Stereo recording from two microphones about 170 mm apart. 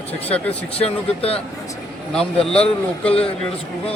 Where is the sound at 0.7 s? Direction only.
35° left (ahead or behind).